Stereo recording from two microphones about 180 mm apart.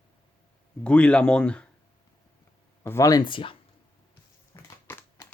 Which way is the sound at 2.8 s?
20° left (ahead or behind).